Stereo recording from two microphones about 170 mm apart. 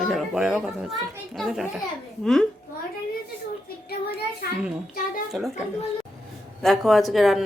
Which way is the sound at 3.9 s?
70° left (ahead or behind).